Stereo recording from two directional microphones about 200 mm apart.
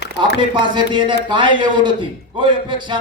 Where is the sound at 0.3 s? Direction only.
25° right (ahead or behind).